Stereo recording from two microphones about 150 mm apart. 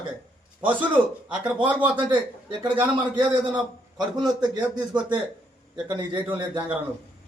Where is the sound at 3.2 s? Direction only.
10° right (ahead or behind).